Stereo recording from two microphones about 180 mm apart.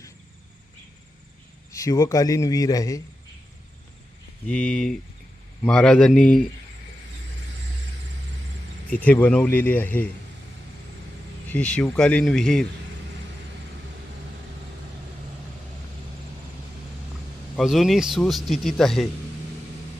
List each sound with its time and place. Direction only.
1.7 s a man's voice: 15° left (ahead or behind)
4.4 s a man's voice: 5° left (ahead or behind)
9.0 s speech: 10° left (ahead or behind)
11.4 s a man's voice: 10° left (ahead or behind)
17.6 s a man's voice: centre (ahead or behind)